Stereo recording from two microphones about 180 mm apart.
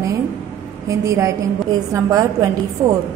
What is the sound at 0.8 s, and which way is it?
A woman's voice, 15° right (ahead or behind).